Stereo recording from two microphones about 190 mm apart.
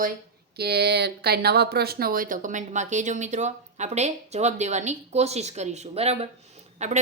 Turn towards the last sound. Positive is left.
turn(degrees=-35)  # may be behind; listen again after turning